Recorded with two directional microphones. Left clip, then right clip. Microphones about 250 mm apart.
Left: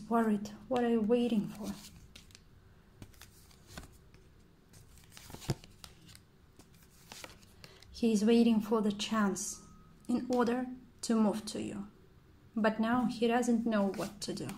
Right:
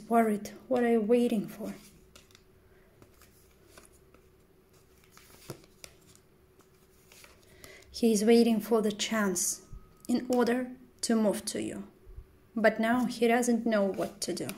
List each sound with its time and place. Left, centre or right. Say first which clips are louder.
0.2 s speech: right 5 dB; centre
7.9 s speech: right 5 dB; centre